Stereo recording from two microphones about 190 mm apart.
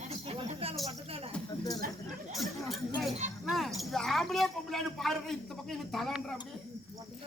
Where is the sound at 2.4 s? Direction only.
Centre (ahead or behind).